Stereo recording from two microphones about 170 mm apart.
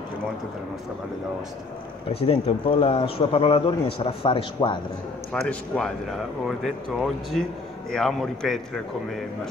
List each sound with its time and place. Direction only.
2.0 s a man's voice: 35° left (ahead or behind)
5.3 s speech: 5° left (ahead or behind)